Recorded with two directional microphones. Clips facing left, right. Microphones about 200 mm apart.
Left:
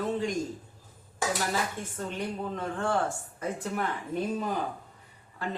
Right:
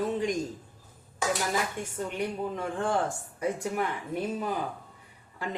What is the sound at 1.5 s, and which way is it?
A woman's voice, 10° right (ahead or behind).